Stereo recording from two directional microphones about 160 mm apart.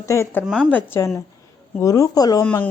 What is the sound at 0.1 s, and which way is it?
Speech, 15° left (ahead or behind).